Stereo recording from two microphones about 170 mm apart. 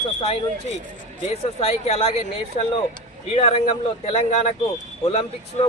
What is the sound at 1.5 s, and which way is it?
Speech, 40° left (ahead or behind).